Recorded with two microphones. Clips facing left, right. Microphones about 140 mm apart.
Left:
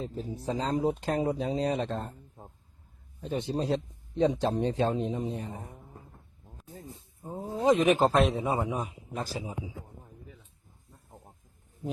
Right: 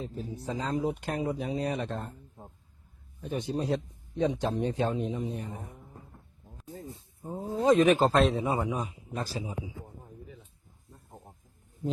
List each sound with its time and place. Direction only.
0.0 s speech: 30° left (ahead or behind)
3.2 s a man's voice: 25° left (ahead or behind)
7.2 s a man's voice: 15° left (ahead or behind)